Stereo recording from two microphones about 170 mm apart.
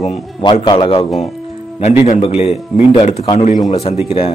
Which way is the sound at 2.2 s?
35° left (ahead or behind).